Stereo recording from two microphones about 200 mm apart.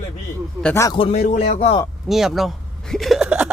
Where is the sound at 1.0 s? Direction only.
30° left (ahead or behind).